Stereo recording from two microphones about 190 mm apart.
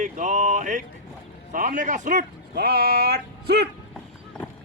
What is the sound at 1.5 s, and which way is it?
A man's voice, 40° right (ahead or behind).